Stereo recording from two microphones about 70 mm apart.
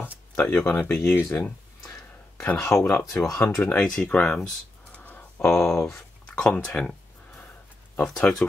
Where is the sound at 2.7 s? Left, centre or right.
Left.